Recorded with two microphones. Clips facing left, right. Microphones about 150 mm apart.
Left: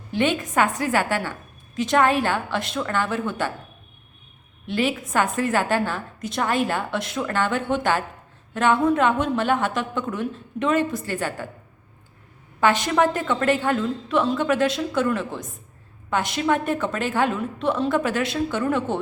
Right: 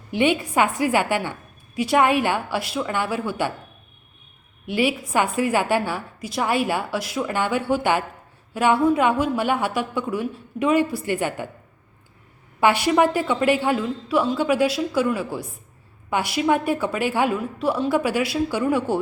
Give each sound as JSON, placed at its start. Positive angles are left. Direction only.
{"t": 0.1, "sound": "a woman's voice", "side_deg": -10}
{"t": 4.6, "sound": "a woman's voice", "side_deg": -10}
{"t": 12.5, "sound": "a woman's voice", "side_deg": -10}